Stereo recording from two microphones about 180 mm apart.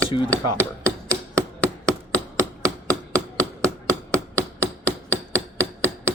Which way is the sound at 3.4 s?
15° right (ahead or behind).